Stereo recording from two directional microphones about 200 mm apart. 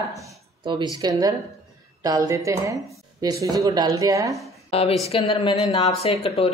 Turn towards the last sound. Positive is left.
turn(degrees=30)  # may be behind; listen again after turning